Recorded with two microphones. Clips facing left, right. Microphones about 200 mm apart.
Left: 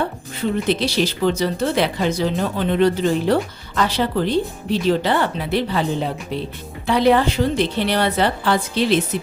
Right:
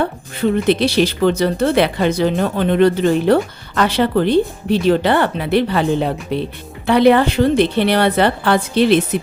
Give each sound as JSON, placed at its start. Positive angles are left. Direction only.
{"t": 0.7, "sound": "speech", "side_deg": -60}